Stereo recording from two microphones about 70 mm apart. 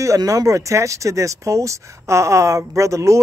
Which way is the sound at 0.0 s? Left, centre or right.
Right.